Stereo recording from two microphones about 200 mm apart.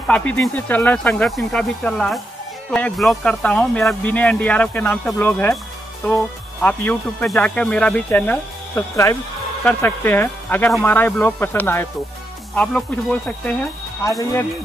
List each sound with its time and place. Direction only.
0.1 s speech: 5° left (ahead or behind)